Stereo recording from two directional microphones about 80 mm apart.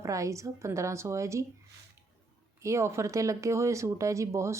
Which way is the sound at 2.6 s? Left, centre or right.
Right.